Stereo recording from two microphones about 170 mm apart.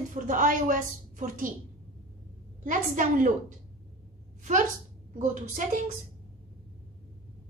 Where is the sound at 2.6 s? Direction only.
50° right (ahead or behind).